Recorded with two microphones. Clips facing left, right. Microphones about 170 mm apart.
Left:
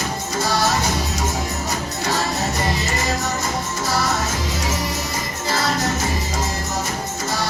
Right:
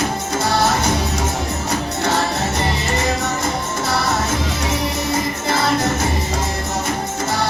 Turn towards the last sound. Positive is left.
turn(degrees=-55)  # may be behind; listen again after turning